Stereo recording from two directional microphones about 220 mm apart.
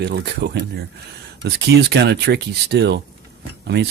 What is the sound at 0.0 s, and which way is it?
Speech, 50° right (ahead or behind).